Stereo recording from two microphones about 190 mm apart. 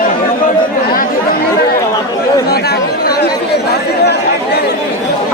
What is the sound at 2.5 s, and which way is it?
Speech, 55° left (ahead or behind).